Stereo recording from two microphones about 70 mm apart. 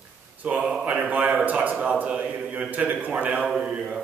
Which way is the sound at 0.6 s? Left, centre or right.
Centre.